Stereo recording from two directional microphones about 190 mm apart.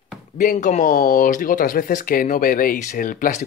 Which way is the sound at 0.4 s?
40° left (ahead or behind).